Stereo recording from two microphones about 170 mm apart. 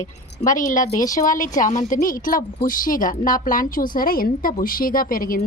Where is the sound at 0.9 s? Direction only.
20° left (ahead or behind).